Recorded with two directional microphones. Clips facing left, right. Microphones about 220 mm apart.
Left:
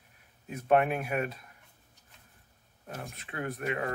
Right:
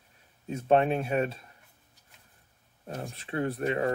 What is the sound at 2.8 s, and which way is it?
Speech, 30° right (ahead or behind).